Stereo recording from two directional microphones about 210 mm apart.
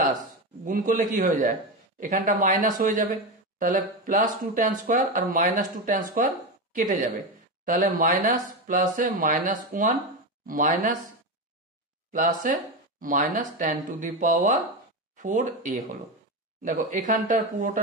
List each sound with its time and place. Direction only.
0.7 s speech: 40° right (ahead or behind)
12.1 s speech: 35° right (ahead or behind)